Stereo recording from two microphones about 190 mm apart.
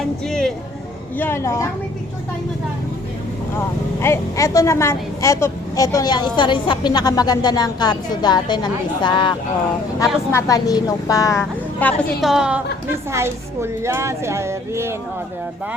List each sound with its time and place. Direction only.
0.3 s music: 5° left (ahead or behind)
1.2 s a woman's voice: 15° left (ahead or behind)
4.0 s a woman's voice: 15° left (ahead or behind)
10.3 s a woman's voice: 15° left (ahead or behind); by 14.9 s 15° right (ahead or behind)